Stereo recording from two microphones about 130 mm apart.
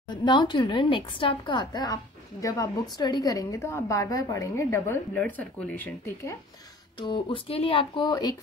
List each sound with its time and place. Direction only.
0.1 s a woman's voice: 35° left (ahead or behind); by 6.3 s 10° left (ahead or behind)
7.0 s a woman's voice: 40° left (ahead or behind)